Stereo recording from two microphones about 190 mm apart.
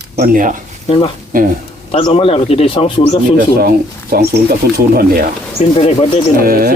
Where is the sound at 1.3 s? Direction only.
45° right (ahead or behind).